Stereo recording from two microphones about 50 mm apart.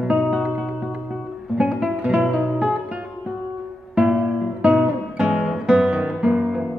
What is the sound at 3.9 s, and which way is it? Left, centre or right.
Music, centre.